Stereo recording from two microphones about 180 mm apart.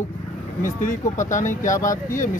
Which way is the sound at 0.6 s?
45° left (ahead or behind).